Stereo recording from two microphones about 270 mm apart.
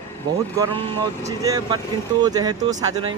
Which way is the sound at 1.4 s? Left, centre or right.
Centre.